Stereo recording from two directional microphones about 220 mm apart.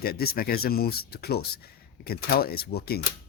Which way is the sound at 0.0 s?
45° left (ahead or behind).